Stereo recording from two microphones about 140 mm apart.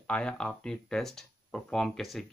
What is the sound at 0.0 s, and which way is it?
Speech, 5° left (ahead or behind).